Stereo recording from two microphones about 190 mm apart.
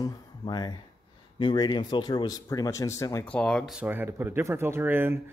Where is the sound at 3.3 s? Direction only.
5° left (ahead or behind).